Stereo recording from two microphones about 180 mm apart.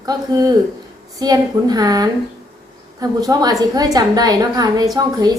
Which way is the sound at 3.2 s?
20° right (ahead or behind).